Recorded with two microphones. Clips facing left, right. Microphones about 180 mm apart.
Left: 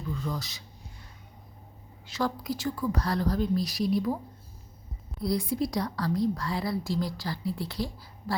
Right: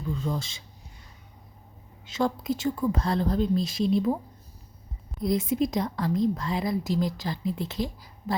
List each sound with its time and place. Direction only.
0.2 s a woman's voice: 25° right (ahead or behind)
2.0 s a woman's voice: 25° right (ahead or behind)
5.2 s a woman's voice: 20° right (ahead or behind)